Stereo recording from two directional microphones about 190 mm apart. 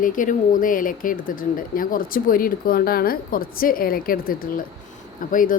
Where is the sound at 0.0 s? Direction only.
45° left (ahead or behind).